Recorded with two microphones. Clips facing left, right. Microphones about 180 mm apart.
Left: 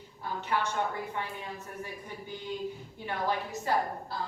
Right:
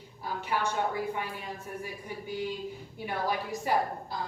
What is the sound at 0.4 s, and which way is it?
A woman's voice, 10° right (ahead or behind).